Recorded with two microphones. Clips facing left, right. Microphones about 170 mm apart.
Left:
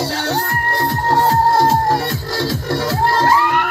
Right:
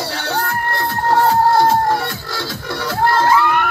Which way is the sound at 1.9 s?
35° left (ahead or behind).